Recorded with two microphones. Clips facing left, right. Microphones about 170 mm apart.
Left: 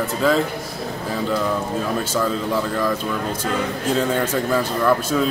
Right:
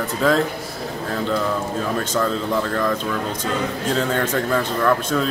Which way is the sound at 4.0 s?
5° left (ahead or behind).